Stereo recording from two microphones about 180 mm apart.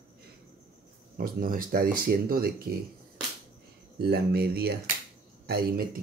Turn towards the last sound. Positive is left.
turn(degrees=-60)  # may be behind; listen again after turning